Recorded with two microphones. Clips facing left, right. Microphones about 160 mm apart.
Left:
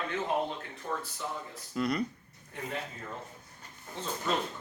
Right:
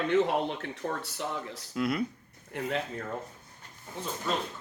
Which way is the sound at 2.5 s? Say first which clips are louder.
Right 6 dB; 90° right.